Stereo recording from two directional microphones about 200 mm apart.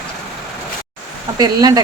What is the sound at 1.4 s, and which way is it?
Speech, 20° right (ahead or behind).